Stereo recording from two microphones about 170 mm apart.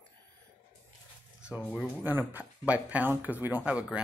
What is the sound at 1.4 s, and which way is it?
Speech, 5° right (ahead or behind).